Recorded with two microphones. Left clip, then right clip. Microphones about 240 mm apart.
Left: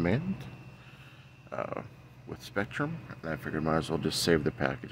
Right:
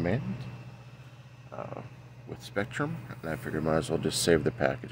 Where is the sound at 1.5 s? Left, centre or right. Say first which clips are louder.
Left 4 dB; left.